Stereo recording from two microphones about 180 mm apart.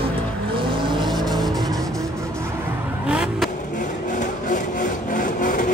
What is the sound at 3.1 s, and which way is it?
Vehicle, 5° right (ahead or behind).